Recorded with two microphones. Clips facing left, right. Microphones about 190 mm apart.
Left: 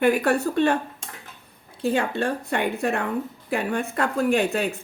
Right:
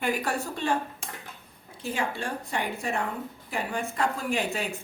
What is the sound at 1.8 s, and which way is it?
Speech, 65° left (ahead or behind).